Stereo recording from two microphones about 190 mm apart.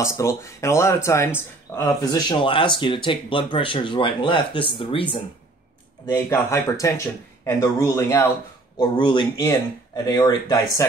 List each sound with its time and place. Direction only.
0.0 s speech: 15° left (ahead or behind)
6.1 s speech: 15° left (ahead or behind)